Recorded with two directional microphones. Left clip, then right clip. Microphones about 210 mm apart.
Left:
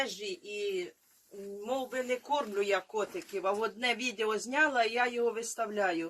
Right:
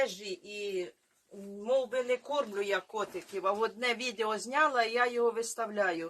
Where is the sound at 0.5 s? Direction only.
15° right (ahead or behind).